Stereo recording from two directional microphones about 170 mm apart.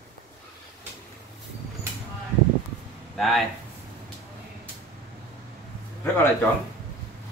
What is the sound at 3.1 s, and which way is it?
Speech, centre (ahead or behind).